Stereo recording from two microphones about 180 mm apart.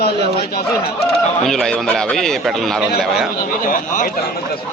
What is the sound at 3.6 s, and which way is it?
Speech, 45° left (ahead or behind).